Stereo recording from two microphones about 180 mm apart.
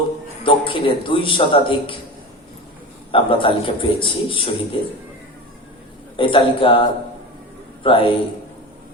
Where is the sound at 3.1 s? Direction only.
30° left (ahead or behind).